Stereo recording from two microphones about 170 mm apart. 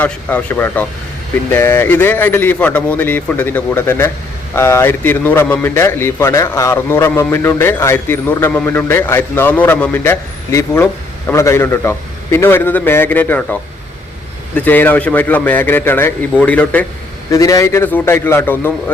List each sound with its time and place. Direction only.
0.0 s a man's voice: 10° left (ahead or behind)
17.3 s a man's voice: 20° left (ahead or behind)